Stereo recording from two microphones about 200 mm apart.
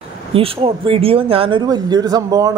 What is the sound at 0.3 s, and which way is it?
A woman's voice, 30° right (ahead or behind).